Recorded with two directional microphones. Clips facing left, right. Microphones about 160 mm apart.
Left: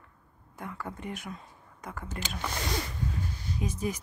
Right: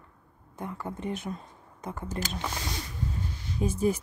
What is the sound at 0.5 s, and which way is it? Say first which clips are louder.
Speech: right 3 dB; 20° right (ahead or behind).